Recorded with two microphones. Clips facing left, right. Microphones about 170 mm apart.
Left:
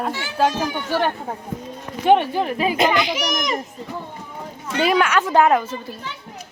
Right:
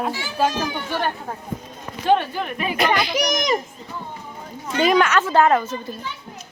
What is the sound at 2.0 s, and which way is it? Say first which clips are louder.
Speech: left 3 dB; 20° left (ahead or behind).